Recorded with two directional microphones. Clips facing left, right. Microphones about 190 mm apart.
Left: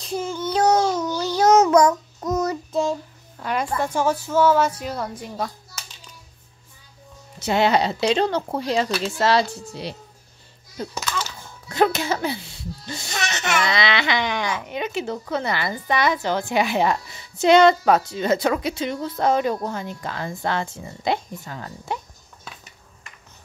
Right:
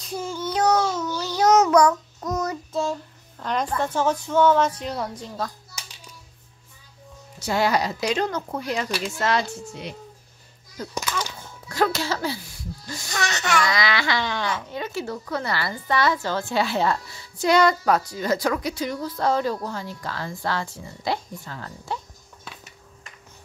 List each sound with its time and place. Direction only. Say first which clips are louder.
0.0 s child singing: left 3 dB; 20° left (ahead or behind)
0.6 s babbling: left 3 dB; 30° left (ahead or behind)
1.1 s child singing: left 2 dB; 30° left (ahead or behind)
3.3 s a woman's voice: left 1 dB; 10° left (ahead or behind)
7.3 s a child's voice: left 3 dB; 20° left (ahead or behind)
11.0 s a child's voice: right 2 dB; 15° right (ahead or behind)
11.7 s speech: left 3 dB; 20° left (ahead or behind)